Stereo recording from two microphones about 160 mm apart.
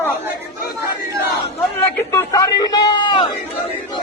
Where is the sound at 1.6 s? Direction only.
15° left (ahead or behind); by 3.3 s 30° left (ahead or behind).